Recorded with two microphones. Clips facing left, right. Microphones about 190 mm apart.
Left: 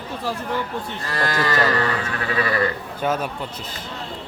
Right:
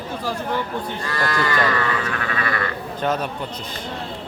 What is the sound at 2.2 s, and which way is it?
Sheep, 30° left (ahead or behind).